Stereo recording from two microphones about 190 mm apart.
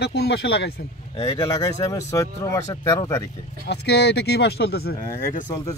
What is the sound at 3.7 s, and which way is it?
Speech, 65° left (ahead or behind).